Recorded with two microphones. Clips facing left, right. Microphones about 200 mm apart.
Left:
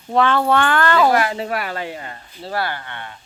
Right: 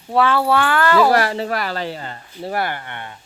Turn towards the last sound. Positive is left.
turn(degrees=-20)  # may be behind; listen again after turning